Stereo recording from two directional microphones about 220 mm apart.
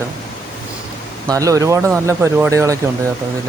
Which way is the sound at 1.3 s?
15° right (ahead or behind).